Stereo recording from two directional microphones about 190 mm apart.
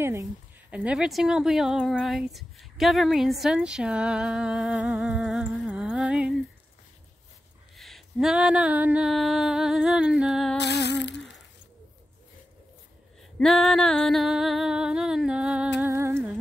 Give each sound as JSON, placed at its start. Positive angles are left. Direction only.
{"t": 0.0, "sound": "a woman's voice", "side_deg": -15}
{"t": 7.7, "sound": "a woman's voice", "side_deg": 0}
{"t": 10.6, "sound": "humming", "side_deg": 65}
{"t": 13.4, "sound": "female singing", "side_deg": 0}
{"t": 15.8, "sound": "music", "side_deg": -10}